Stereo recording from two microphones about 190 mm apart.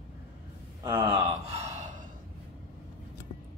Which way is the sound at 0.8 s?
15° right (ahead or behind).